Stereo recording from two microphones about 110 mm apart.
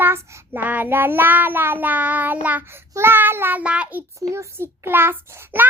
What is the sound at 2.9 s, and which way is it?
Child singing, 20° right (ahead or behind).